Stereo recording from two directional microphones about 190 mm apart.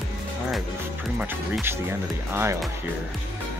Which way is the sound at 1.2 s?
10° right (ahead or behind).